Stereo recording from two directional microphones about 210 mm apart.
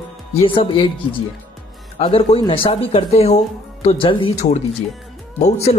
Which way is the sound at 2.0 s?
25° left (ahead or behind).